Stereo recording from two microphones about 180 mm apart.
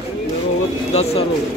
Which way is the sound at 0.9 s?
35° left (ahead or behind).